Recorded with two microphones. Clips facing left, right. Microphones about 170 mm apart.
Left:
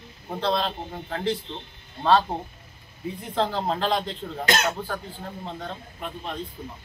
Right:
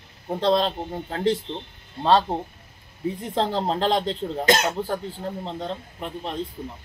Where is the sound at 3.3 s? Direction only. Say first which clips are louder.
Right 1 dB; 30° right (ahead or behind).